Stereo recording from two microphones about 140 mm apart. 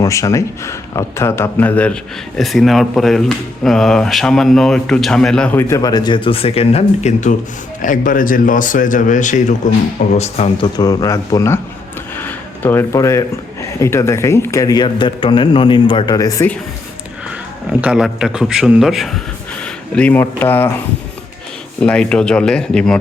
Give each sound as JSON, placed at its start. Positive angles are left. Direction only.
{"t": 0.0, "sound": "speech", "side_deg": 20}
{"t": 7.8, "sound": "speech", "side_deg": 70}
{"t": 10.2, "sound": "speech", "side_deg": 50}
{"t": 10.8, "sound": "speech", "side_deg": 25}
{"t": 17.7, "sound": "speech", "side_deg": -10}
{"t": 21.8, "sound": "speech", "side_deg": 5}